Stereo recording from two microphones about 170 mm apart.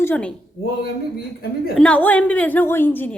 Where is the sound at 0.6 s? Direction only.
65° left (ahead or behind).